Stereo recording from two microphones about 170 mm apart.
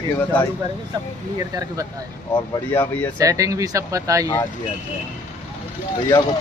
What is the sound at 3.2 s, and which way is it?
Speech, 20° right (ahead or behind).